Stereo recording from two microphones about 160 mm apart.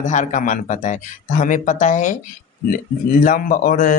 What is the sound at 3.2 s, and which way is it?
Speech, 60° left (ahead or behind).